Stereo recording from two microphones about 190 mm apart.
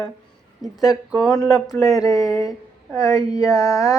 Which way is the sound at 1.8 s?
15° left (ahead or behind).